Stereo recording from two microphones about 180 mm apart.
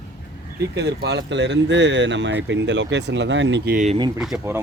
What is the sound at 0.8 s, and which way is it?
Speech, 70° right (ahead or behind).